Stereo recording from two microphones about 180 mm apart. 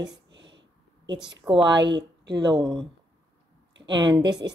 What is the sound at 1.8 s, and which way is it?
Speech, 80° right.